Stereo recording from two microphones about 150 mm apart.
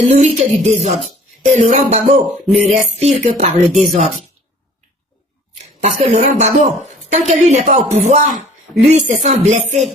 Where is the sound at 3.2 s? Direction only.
45° right (ahead or behind).